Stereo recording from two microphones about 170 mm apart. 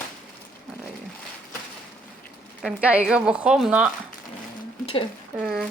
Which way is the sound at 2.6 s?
5° right (ahead or behind).